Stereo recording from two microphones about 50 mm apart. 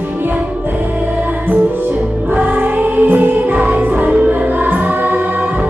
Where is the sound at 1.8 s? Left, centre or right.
Right.